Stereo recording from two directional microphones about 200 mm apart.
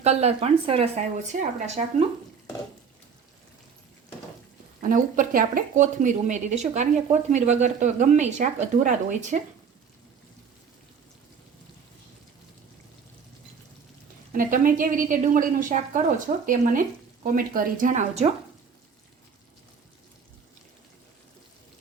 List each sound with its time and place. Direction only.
0.0 s speech: 30° right (ahead or behind)
4.8 s speech: 40° right (ahead or behind)
14.3 s a woman's voice: 45° right (ahead or behind)